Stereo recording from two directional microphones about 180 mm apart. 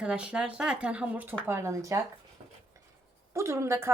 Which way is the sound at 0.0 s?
5° right (ahead or behind).